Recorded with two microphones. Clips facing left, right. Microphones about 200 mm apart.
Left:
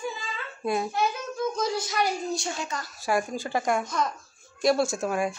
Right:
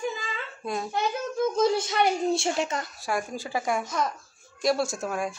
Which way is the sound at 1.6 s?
25° right (ahead or behind).